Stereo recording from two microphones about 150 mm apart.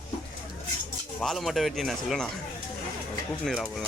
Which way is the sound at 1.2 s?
Centre (ahead or behind).